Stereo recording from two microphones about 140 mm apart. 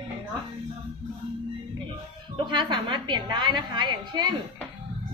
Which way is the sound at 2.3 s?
35° right (ahead or behind).